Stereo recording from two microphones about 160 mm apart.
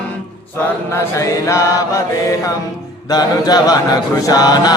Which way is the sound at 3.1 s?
25° left (ahead or behind).